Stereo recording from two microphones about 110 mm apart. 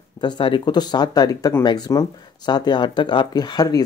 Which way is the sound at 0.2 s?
45° left (ahead or behind).